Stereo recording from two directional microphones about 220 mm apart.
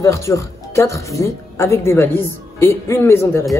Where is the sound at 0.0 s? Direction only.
15° left (ahead or behind).